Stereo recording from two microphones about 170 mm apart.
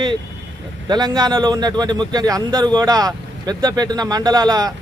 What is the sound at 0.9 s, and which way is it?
Speech, 25° right (ahead or behind).